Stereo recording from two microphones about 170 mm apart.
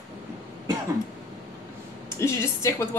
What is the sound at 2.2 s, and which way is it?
Speech, 15° left (ahead or behind).